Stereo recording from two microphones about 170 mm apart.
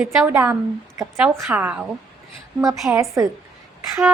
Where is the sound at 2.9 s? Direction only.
20° right (ahead or behind).